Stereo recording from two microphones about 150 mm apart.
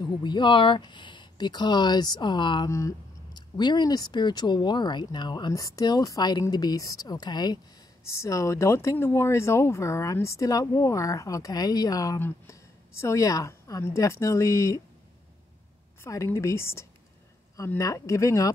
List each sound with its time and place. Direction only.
0.0 s speech: 30° left (ahead or behind)
16.0 s speech: 20° left (ahead or behind)